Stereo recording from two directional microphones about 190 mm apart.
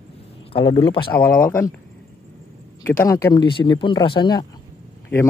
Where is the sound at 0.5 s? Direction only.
25° left (ahead or behind).